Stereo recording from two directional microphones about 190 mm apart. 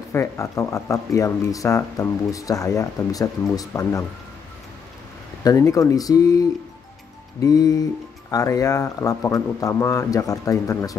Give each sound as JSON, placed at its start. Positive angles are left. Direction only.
{"t": 0.1, "sound": "speech", "side_deg": 15}
{"t": 5.4, "sound": "speech", "side_deg": 20}